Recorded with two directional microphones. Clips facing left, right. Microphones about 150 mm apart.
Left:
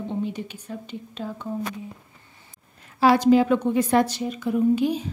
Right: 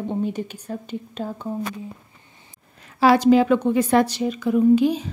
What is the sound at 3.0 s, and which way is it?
A woman's voice, 90° right.